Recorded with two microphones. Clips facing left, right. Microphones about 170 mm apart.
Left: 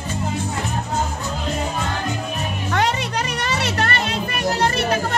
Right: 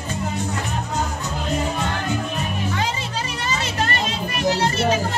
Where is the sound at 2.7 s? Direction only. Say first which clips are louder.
Left 5 dB; 70° left (ahead or behind).